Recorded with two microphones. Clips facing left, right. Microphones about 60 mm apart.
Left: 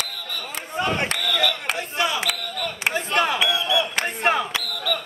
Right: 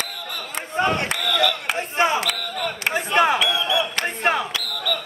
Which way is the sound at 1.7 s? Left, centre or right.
Right.